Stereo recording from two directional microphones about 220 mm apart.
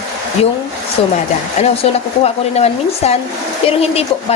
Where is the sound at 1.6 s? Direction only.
30° left (ahead or behind).